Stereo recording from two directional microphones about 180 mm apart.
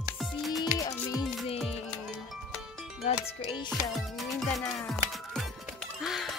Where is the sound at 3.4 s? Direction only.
25° left (ahead or behind).